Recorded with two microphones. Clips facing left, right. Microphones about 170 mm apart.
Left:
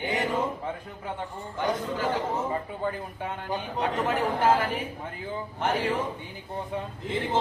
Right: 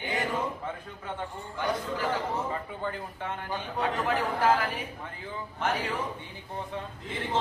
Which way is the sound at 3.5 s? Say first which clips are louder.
Left 2 dB; 20° left (ahead or behind).